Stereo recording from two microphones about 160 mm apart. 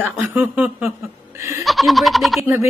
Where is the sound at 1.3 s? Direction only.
15° right (ahead or behind).